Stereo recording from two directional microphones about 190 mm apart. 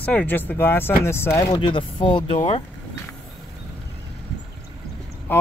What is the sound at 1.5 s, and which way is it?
Speech, 25° left (ahead or behind).